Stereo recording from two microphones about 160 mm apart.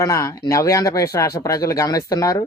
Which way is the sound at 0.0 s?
20° left (ahead or behind).